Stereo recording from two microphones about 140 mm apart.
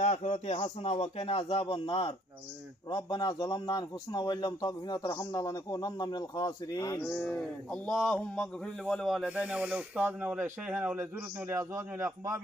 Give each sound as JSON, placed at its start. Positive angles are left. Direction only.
{"t": 0.0, "sound": "a man's voice", "side_deg": 55}
{"t": 7.0, "sound": "speech", "side_deg": 10}